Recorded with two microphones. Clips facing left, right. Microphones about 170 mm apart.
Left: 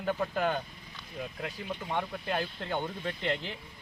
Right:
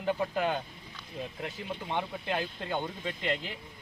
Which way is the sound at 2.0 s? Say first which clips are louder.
Even; 10° right (ahead or behind).